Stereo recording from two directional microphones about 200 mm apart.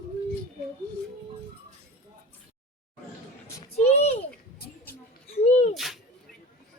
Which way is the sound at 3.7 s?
35° left (ahead or behind).